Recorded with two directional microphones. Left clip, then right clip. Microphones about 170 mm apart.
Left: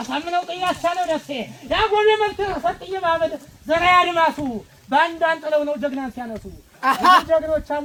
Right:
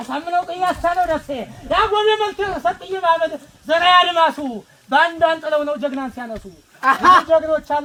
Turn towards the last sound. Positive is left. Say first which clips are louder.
# right 3 dB
turn(degrees=0)  # may be behind; listen again after turning